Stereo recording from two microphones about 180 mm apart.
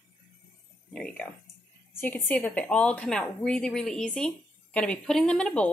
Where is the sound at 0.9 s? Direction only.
5° left (ahead or behind).